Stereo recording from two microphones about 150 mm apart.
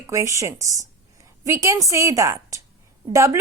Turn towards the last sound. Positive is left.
turn(degrees=-20)  # may be behind; listen again after turning